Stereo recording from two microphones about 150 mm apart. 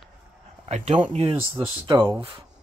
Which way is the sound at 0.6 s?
45° right (ahead or behind).